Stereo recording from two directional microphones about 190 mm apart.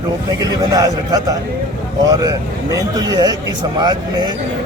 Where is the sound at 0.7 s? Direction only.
20° right (ahead or behind).